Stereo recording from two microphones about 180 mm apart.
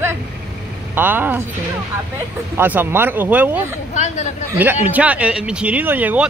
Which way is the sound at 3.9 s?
40° left (ahead or behind).